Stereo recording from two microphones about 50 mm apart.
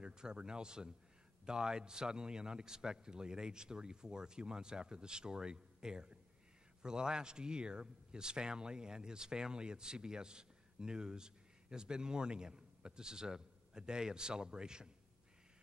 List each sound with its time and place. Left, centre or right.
0.0 s a man's voice: centre